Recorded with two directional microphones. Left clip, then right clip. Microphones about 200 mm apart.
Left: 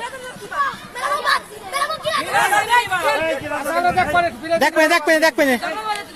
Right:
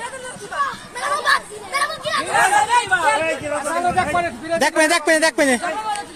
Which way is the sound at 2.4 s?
30° left (ahead or behind).